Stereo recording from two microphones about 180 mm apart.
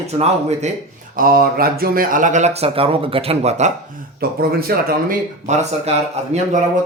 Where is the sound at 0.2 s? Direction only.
35° right (ahead or behind).